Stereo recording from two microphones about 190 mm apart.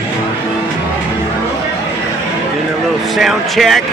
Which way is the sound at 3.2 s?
Centre (ahead or behind).